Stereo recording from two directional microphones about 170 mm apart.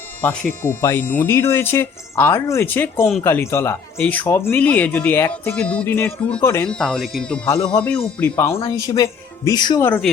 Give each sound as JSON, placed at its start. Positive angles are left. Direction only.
{"t": 0.2, "sound": "speech", "side_deg": 10}